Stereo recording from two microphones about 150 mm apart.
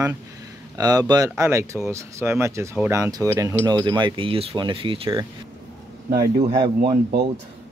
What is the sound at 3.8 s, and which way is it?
Speech, 30° right (ahead or behind).